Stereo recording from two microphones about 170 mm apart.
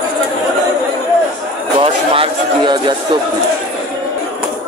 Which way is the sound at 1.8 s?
30° right (ahead or behind).